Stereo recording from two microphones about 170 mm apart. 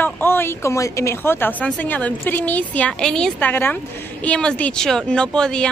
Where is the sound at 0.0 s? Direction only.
15° left (ahead or behind).